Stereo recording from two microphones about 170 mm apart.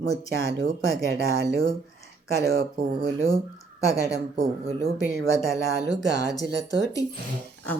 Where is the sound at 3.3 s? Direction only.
20° left (ahead or behind).